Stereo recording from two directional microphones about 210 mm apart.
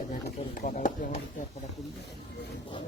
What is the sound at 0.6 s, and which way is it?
Speech, 40° left (ahead or behind).